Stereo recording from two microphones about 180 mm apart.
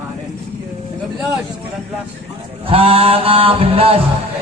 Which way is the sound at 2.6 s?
30° right (ahead or behind).